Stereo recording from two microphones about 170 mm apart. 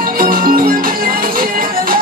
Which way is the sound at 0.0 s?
55° right (ahead or behind).